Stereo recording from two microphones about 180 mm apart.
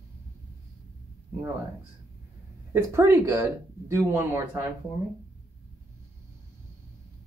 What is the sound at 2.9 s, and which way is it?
Speech, 15° right (ahead or behind).